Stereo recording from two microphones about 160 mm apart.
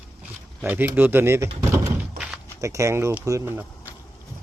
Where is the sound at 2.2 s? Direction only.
65° right (ahead or behind).